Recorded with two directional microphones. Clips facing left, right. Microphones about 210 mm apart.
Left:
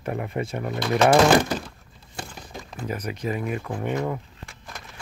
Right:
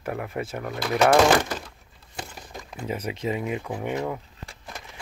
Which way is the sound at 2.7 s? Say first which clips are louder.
Even; 25° right (ahead or behind).